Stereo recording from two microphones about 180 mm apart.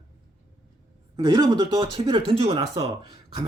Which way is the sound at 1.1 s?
20° right (ahead or behind).